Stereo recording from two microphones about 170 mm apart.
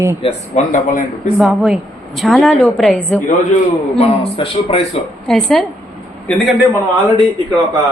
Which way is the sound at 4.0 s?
30° left (ahead or behind).